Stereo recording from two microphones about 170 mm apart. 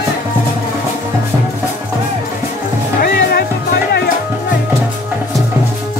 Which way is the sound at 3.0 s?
65° left (ahead or behind).